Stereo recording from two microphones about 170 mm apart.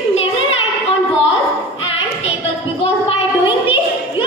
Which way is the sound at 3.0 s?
30° left (ahead or behind).